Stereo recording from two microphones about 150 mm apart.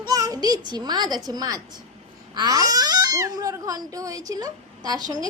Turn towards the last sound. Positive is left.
turn(degrees=-25)  # may be behind; listen again after turning